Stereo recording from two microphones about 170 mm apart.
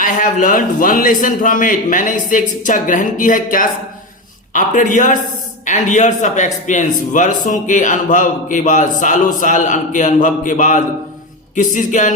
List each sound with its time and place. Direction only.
0.0 s a man's voice: 50° left (ahead or behind)